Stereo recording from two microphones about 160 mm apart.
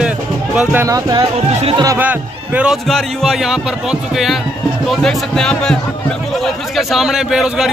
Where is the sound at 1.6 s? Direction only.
40° right (ahead or behind).